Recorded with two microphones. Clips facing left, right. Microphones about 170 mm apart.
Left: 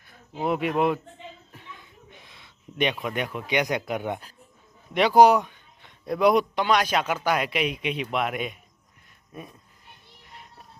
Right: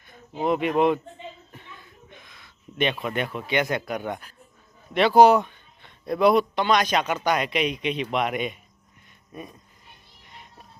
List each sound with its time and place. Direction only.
0.1 s speech: 5° left (ahead or behind)
2.2 s a sound: 30° left (ahead or behind)
2.7 s a man's voice: 10° left (ahead or behind)
10.2 s music: centre (ahead or behind)